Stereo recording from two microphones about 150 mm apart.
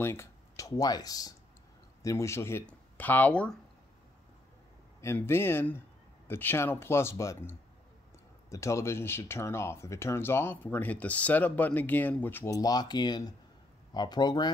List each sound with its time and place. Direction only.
0.0 s speech: 15° left (ahead or behind)
5.0 s speech: 15° left (ahead or behind)